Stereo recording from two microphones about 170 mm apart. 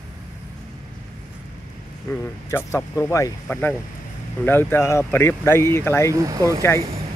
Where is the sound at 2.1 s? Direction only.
15° left (ahead or behind).